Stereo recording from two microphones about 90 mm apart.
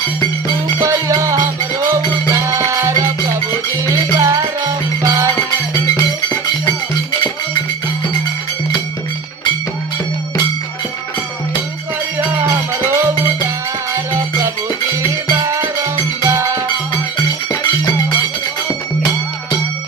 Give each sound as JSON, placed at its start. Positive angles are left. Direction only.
{"t": 0.8, "sound": "music", "side_deg": -35}
{"t": 2.4, "sound": "music", "side_deg": -35}
{"t": 5.9, "sound": "music", "side_deg": 50}
{"t": 12.4, "sound": "music", "side_deg": -30}
{"t": 15.4, "sound": "music", "side_deg": -35}